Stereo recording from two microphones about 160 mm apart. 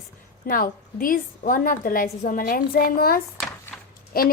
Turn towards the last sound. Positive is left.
turn(degrees=70)  # may be behind; listen again after turning